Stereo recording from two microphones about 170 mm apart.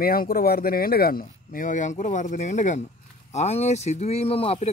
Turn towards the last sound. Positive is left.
turn(degrees=35)  # may be behind; listen again after turning